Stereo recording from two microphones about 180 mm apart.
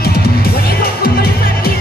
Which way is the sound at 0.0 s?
60° left (ahead or behind).